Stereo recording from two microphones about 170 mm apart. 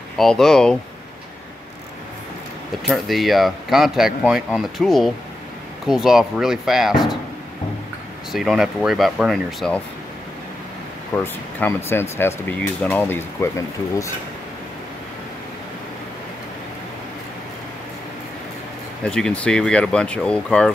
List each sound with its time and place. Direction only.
0.2 s speech: centre (ahead or behind)
2.9 s speech: centre (ahead or behind)
8.3 s speech: centre (ahead or behind)
11.1 s speech: 15° left (ahead or behind)
19.0 s speech: 5° left (ahead or behind)